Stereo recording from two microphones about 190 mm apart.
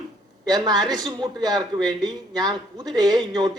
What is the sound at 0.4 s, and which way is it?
A woman's voice, 20° right (ahead or behind).